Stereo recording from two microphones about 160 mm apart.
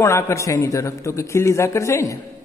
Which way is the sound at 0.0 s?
20° left (ahead or behind).